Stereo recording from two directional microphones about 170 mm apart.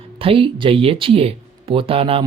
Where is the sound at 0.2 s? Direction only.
30° right (ahead or behind).